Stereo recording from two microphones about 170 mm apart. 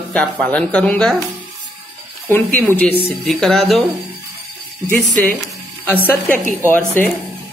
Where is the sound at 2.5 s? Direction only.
10° left (ahead or behind).